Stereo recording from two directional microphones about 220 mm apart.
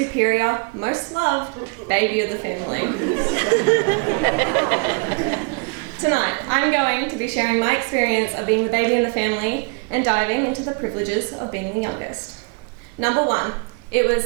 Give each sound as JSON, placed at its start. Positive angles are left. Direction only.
{"t": 0.2, "sound": "a woman's voice", "side_deg": -15}
{"t": 13.0, "sound": "a woman's voice", "side_deg": -20}